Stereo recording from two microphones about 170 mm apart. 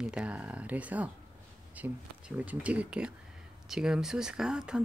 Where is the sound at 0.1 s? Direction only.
5° right (ahead or behind).